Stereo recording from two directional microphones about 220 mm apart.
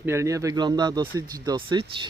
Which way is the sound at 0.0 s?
10° right (ahead or behind).